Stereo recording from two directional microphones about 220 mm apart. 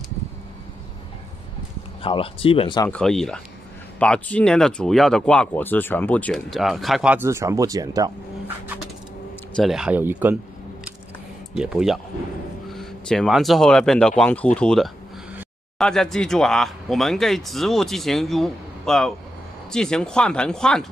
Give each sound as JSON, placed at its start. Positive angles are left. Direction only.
{"t": 2.0, "sound": "speech", "side_deg": 25}
{"t": 2.9, "sound": "speech", "side_deg": 0}
{"t": 9.6, "sound": "speech", "side_deg": 0}
{"t": 11.5, "sound": "speech", "side_deg": -5}